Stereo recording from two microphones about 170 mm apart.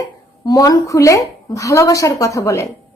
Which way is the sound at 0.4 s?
20° left (ahead or behind).